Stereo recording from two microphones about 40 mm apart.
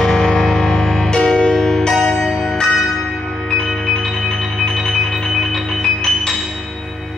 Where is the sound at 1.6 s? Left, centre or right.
Centre.